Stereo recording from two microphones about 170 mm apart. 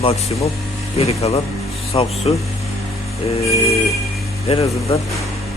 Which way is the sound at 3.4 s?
20° left (ahead or behind).